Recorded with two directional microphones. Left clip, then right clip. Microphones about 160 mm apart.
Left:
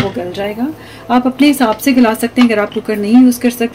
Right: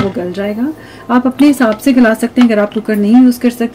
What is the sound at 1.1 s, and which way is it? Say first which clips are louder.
A woman's voice: right 1 dB; 50° right (ahead or behind).